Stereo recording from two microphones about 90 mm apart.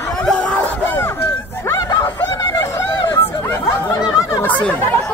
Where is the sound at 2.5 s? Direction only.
50° left (ahead or behind).